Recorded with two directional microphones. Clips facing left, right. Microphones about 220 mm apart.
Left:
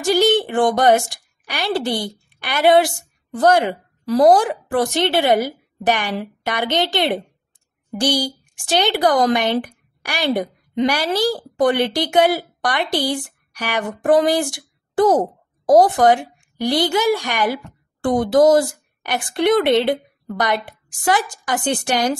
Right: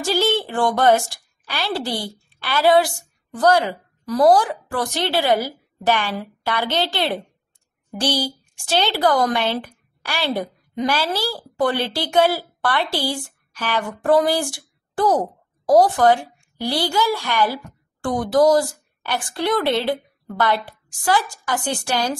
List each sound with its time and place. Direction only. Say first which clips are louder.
0.0 s a woman's voice: left 4 dB; 15° left (ahead or behind)